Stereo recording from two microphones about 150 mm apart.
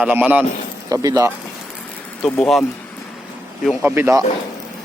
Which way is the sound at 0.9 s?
20° right (ahead or behind).